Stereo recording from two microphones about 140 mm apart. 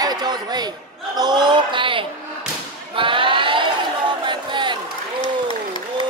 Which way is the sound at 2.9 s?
35° right (ahead or behind).